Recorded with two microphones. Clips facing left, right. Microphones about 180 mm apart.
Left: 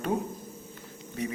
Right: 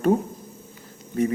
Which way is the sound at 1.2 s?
50° right (ahead or behind).